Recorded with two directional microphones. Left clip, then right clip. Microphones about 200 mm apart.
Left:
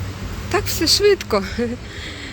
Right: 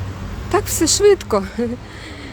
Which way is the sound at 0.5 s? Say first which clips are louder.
Even; 20° right (ahead or behind).